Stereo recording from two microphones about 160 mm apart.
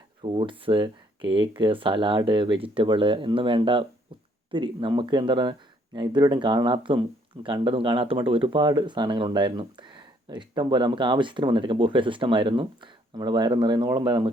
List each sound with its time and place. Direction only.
0.2 s speech: 35° right (ahead or behind)